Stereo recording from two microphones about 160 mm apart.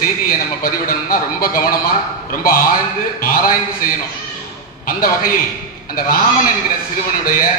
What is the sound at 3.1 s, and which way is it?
A man's voice, 65° left (ahead or behind).